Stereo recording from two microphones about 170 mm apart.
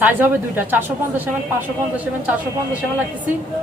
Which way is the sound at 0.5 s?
10° right (ahead or behind).